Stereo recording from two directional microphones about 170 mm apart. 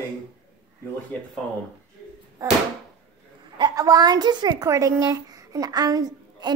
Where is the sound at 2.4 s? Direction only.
20° right (ahead or behind).